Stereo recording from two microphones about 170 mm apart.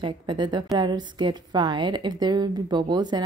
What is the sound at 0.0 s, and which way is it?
A woman's voice, 25° right (ahead or behind).